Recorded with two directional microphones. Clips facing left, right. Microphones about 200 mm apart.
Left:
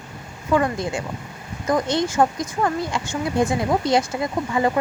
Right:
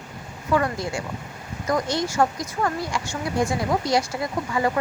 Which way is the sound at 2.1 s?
20° left (ahead or behind).